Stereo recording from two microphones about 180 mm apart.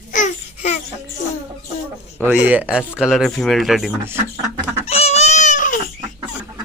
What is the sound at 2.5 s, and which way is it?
Speech, 5° right (ahead or behind).